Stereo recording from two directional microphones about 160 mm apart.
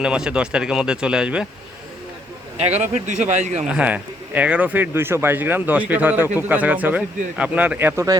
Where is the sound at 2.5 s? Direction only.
40° right (ahead or behind).